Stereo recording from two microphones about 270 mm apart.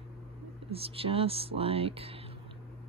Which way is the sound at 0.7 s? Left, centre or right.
Right.